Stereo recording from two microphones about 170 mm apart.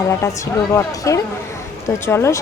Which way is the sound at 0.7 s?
20° left (ahead or behind).